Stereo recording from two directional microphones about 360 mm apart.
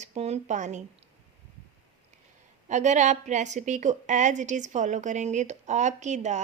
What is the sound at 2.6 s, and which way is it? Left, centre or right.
A woman's voice, centre.